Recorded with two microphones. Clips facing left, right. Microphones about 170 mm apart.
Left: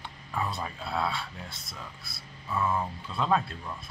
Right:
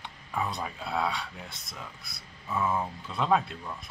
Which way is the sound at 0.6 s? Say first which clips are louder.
Right 1 dB; 15° right (ahead or behind).